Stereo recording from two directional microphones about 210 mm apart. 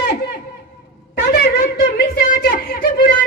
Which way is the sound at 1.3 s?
45° left (ahead or behind).